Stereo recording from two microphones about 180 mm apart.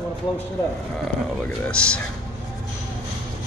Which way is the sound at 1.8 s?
5° left (ahead or behind).